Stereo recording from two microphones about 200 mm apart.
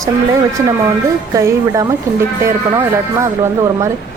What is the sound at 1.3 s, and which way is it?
Speech, 15° right (ahead or behind).